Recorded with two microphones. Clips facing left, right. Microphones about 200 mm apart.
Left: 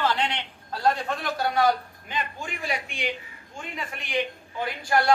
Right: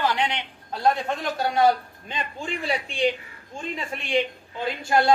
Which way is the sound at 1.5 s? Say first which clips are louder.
Right 4 dB; 30° right (ahead or behind).